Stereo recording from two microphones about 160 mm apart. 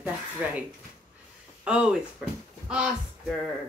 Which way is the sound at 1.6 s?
5° right (ahead or behind).